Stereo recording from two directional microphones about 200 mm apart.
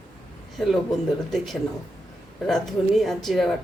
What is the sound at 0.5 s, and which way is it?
Speech, centre (ahead or behind).